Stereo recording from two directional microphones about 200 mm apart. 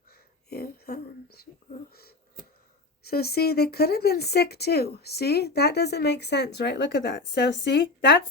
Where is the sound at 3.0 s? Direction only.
50° left (ahead or behind).